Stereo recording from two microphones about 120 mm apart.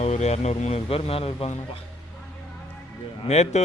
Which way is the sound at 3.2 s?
70° left (ahead or behind).